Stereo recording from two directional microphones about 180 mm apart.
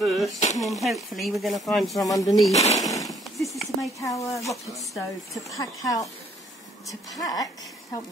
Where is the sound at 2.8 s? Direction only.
20° left (ahead or behind).